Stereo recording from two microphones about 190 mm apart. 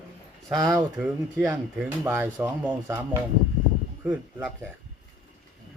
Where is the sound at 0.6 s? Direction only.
10° right (ahead or behind).